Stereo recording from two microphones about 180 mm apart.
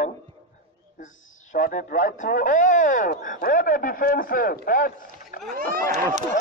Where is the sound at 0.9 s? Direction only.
45° left (ahead or behind).